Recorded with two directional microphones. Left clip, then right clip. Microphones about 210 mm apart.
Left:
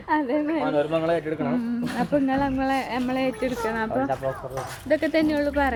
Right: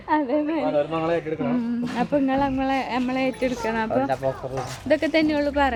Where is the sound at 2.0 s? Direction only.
20° right (ahead or behind).